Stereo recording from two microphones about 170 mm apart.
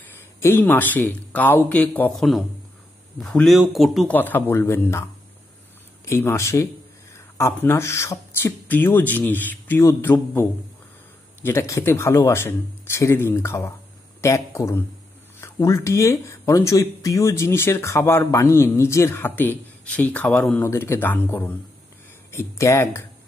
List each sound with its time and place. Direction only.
0.2 s a man's voice: 15° left (ahead or behind)
4.1 s speech: 10° left (ahead or behind)
6.0 s speech: 15° left (ahead or behind)
11.4 s speech: 15° left (ahead or behind)
20.6 s speech: 15° left (ahead or behind)